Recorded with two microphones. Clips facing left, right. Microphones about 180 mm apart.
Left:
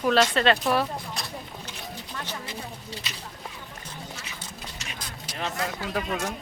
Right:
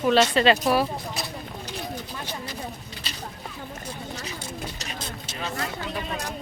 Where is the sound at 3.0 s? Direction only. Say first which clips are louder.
Right 2 dB; 30° right (ahead or behind).